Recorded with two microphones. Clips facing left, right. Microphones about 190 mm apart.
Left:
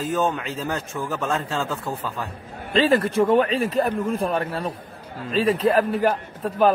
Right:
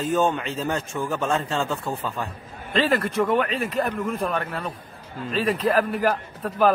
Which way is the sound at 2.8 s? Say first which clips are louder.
Left 3 dB; 30° left (ahead or behind).